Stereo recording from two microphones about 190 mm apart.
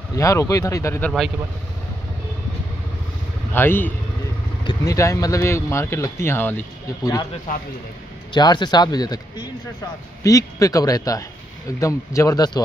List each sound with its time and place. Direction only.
0.1 s speech: 15° left (ahead or behind)
3.5 s speech: 10° left (ahead or behind)
8.3 s speech: 25° left (ahead or behind)